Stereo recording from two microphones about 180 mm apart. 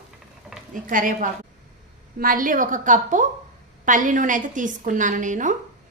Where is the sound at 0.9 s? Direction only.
50° right (ahead or behind).